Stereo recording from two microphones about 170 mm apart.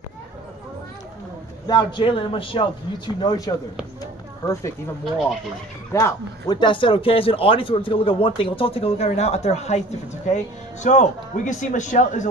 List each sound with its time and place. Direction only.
1.7 s a man's voice: 25° left (ahead or behind)
4.0 s a sound: 20° left (ahead or behind)
5.9 s speech: 20° left (ahead or behind); by 12.3 s 45° left (ahead or behind)